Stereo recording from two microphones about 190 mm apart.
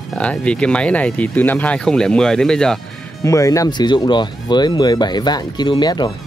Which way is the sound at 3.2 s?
15° left (ahead or behind).